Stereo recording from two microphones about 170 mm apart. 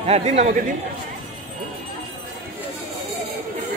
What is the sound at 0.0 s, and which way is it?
Speech, 40° right (ahead or behind).